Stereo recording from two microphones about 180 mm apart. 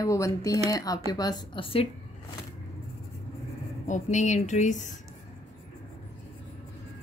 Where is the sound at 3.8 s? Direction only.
45° left (ahead or behind).